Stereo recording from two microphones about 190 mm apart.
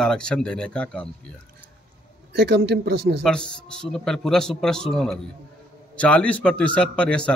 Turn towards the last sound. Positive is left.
turn(degrees=5)  # may be behind; listen again after turning